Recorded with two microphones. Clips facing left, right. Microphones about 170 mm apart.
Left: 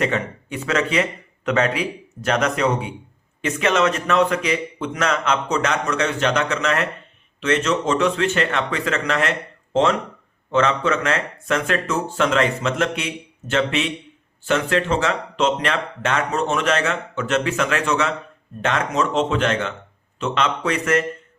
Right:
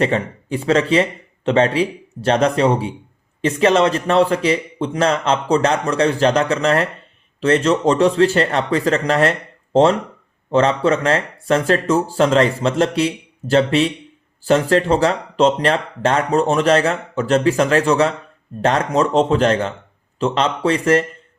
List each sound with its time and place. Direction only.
0.0 s speech: 30° right (ahead or behind)